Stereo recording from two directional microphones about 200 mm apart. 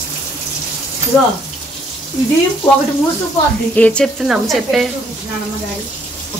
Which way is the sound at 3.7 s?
5° left (ahead or behind).